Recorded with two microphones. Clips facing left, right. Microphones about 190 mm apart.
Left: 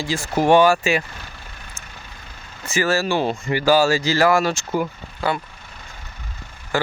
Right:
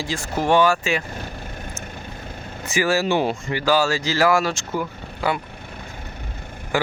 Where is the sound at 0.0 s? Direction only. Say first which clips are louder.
Left 4 dB; 5° left (ahead or behind).